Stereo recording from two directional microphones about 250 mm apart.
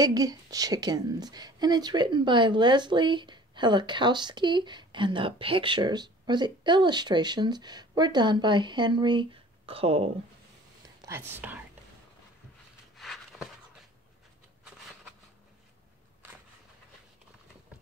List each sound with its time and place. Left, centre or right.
0.0 s a woman's voice: centre
11.0 s speech: centre
12.9 s a sound: centre